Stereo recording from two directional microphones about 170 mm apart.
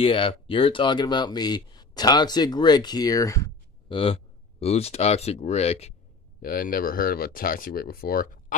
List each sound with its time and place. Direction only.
0.0 s speech: 30° left (ahead or behind)
3.9 s speech: 35° left (ahead or behind)
6.4 s speech: 55° left (ahead or behind)